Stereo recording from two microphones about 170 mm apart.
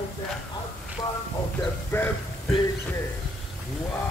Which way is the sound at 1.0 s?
20° left (ahead or behind).